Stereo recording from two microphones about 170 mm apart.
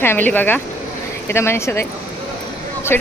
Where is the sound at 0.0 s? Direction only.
10° left (ahead or behind).